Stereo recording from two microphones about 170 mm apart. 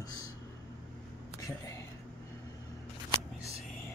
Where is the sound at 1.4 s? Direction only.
20° left (ahead or behind).